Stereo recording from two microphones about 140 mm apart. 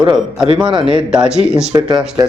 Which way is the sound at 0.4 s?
40° right (ahead or behind).